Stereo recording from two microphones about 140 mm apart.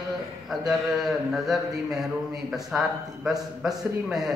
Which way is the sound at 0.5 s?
Centre (ahead or behind).